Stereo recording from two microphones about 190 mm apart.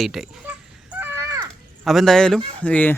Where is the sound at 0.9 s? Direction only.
15° right (ahead or behind).